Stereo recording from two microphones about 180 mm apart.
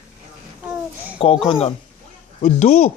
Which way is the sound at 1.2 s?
30° left (ahead or behind).